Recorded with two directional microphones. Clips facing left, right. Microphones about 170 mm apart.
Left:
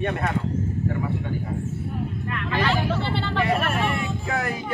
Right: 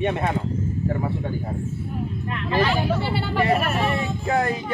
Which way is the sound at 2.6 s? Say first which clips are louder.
Right 1 dB; 10° right (ahead or behind).